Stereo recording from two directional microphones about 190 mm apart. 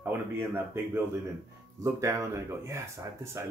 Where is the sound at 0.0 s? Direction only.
10° right (ahead or behind).